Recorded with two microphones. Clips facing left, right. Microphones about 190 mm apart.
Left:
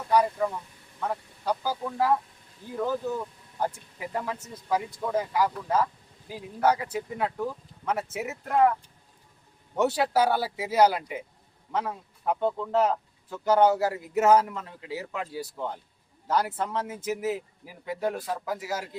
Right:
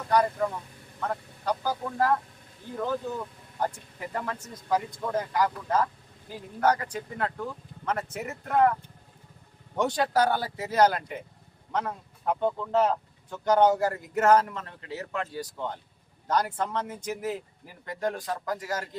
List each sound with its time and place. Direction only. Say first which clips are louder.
0.1 s speech: left 1 dB; 5° left (ahead or behind)
9.7 s speech: left 1 dB; 5° left (ahead or behind)